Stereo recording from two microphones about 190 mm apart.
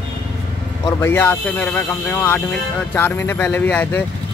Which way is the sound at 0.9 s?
10° left (ahead or behind).